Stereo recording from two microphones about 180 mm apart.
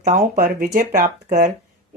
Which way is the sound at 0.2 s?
50° right (ahead or behind).